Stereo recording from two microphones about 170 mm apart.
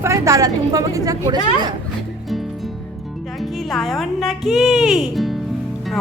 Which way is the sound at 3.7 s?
Centre (ahead or behind).